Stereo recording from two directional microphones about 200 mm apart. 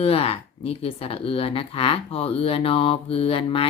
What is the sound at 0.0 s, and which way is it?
Speech, 30° left (ahead or behind).